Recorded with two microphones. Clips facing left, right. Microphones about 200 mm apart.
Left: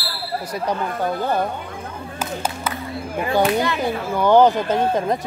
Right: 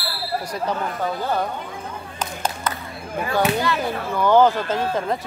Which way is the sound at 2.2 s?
10° left (ahead or behind).